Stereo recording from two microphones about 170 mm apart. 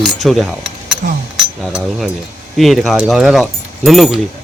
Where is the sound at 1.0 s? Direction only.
55° right (ahead or behind).